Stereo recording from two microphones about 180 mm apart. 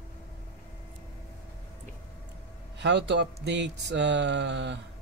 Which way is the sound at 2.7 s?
75° right (ahead or behind).